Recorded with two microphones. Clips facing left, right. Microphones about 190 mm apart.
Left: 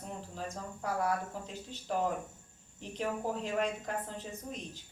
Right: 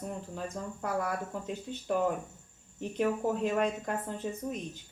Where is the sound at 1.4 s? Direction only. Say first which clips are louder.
Right 6 dB; 55° right (ahead or behind).